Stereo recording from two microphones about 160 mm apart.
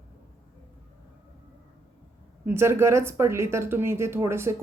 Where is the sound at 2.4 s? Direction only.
15° right (ahead or behind).